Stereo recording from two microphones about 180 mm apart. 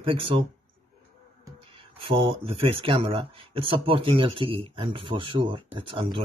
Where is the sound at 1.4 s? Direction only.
30° right (ahead or behind).